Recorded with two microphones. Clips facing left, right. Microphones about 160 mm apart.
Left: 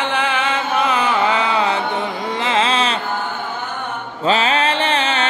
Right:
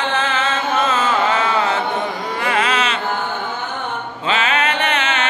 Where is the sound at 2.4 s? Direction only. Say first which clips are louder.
Left 1 dB; 25° left (ahead or behind).